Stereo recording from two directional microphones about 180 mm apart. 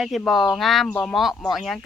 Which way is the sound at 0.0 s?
Centre (ahead or behind).